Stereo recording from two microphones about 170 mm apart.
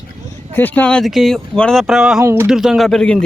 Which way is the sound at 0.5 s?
10° left (ahead or behind).